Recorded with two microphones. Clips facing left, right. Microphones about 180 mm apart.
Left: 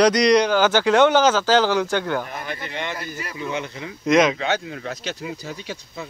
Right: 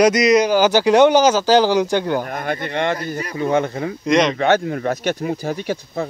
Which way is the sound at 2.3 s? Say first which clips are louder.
Right 7 dB; 50° right (ahead or behind).